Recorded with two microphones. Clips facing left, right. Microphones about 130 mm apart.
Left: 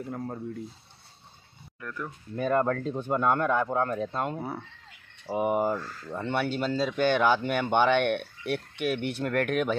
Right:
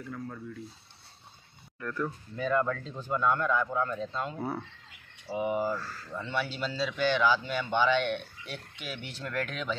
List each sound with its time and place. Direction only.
0.2 s speech: 40° left (ahead or behind)
1.8 s speech: 10° left (ahead or behind)
2.3 s speech: 50° left (ahead or behind)